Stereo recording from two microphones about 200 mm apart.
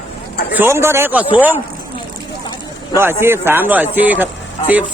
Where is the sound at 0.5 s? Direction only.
10° right (ahead or behind).